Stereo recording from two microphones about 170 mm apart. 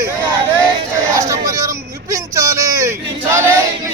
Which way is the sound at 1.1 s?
20° right (ahead or behind).